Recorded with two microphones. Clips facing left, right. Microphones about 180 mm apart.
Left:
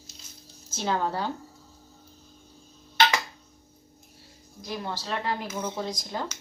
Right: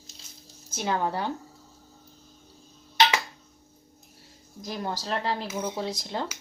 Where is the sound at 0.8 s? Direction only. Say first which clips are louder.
Even; 15° right (ahead or behind).